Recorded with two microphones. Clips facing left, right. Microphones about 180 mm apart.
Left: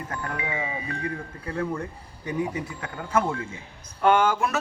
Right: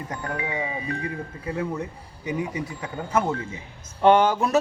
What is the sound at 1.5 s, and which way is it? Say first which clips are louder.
Speech: even; 10° right (ahead or behind).